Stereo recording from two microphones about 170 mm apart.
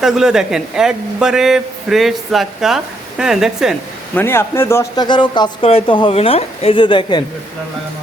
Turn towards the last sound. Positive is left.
turn(degrees=25)  # may be behind; listen again after turning